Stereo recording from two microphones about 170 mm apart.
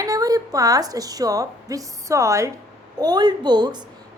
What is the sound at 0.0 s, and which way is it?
A woman's voice, 20° right (ahead or behind).